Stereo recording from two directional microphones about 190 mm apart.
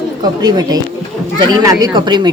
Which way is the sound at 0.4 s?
20° right (ahead or behind).